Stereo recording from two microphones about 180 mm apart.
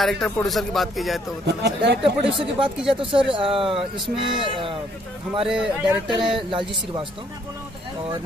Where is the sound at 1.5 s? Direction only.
70° right (ahead or behind).